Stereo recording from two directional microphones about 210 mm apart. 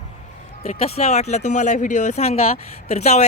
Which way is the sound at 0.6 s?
35° left (ahead or behind).